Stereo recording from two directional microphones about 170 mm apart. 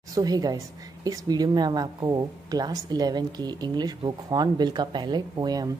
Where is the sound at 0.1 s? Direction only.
20° right (ahead or behind).